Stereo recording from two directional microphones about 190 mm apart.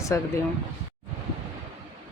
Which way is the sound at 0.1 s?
15° left (ahead or behind).